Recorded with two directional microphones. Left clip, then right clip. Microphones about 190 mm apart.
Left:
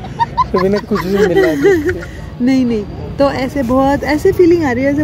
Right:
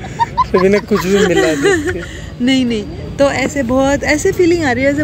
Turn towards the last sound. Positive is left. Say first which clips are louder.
# even
turn(degrees=25)  # may be behind; listen again after turning